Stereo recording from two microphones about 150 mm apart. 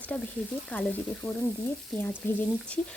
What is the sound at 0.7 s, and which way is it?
Speech, 10° left (ahead or behind).